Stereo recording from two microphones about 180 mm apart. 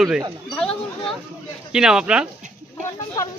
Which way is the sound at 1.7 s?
5° right (ahead or behind).